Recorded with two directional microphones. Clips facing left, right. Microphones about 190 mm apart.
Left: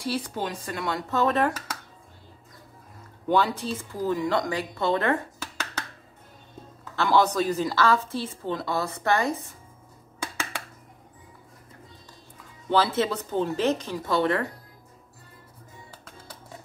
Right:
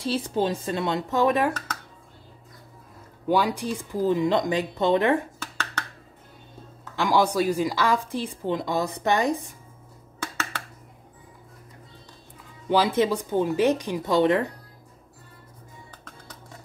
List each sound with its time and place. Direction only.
0.0 s speech: 25° right (ahead or behind)
3.3 s a woman's voice: 10° right (ahead or behind)
5.4 s finger snapping: 10° left (ahead or behind)
7.0 s a woman's voice: 10° right (ahead or behind)
10.2 s a sound: 15° left (ahead or behind)
12.6 s a woman's voice: 15° right (ahead or behind)
15.9 s music: 10° left (ahead or behind)